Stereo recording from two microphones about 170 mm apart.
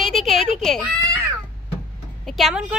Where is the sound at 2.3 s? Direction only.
Centre (ahead or behind).